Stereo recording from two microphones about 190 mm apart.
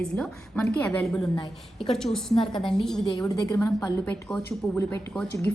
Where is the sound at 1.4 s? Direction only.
25° left (ahead or behind).